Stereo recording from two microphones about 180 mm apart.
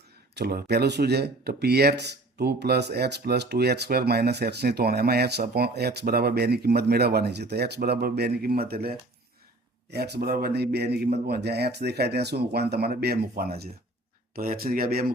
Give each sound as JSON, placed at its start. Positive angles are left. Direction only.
{"t": 0.3, "sound": "speech", "side_deg": -60}